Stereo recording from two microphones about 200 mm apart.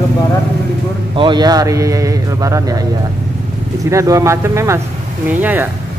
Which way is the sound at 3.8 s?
15° right (ahead or behind).